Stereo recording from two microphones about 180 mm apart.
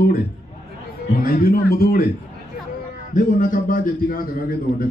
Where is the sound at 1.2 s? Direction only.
55° left (ahead or behind).